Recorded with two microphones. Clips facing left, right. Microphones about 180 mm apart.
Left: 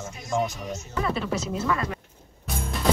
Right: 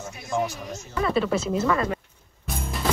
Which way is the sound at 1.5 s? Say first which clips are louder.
Right 3 dB; 40° right (ahead or behind).